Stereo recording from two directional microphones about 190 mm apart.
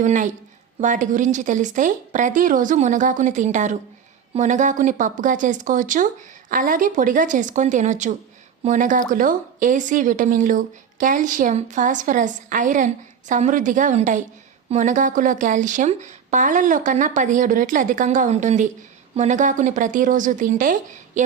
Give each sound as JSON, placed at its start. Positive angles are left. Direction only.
{"t": 0.0, "sound": "a woman's voice", "side_deg": -40}